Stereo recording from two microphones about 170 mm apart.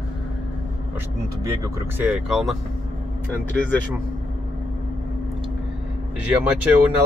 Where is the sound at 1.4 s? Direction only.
15° right (ahead or behind).